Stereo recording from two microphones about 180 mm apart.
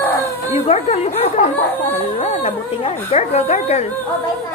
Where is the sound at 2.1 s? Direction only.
35° left (ahead or behind).